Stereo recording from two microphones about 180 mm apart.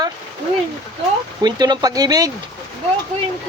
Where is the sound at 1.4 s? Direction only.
25° right (ahead or behind).